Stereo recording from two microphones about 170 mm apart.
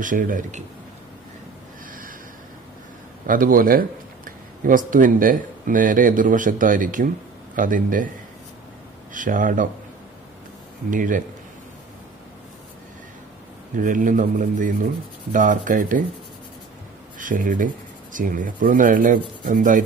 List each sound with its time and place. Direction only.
0.0 s speech: 50° right (ahead or behind)
3.3 s speech: 55° right (ahead or behind)
9.1 s speech: 50° right (ahead or behind)
10.9 s speech: 50° right (ahead or behind)
13.7 s speech: 50° right (ahead or behind)
17.2 s speech: 50° right (ahead or behind)